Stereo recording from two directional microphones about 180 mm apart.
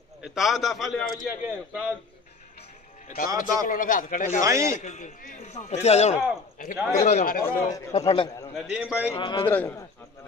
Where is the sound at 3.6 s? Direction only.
45° left (ahead or behind).